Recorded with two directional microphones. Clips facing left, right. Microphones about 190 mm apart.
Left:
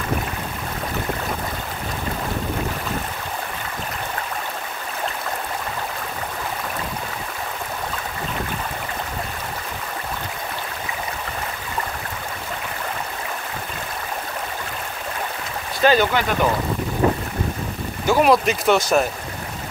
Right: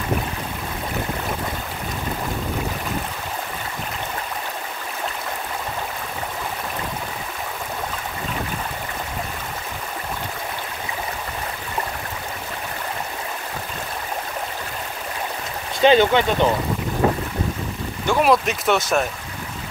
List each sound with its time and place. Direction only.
15.8 s speech: 25° right (ahead or behind)
18.0 s speech: 5° left (ahead or behind)